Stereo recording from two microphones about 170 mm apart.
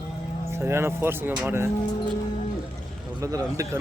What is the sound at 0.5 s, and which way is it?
A man's voice, 15° right (ahead or behind).